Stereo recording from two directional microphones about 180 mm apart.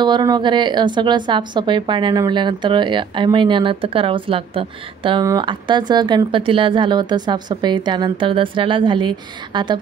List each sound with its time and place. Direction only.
0.0 s speech: 25° right (ahead or behind)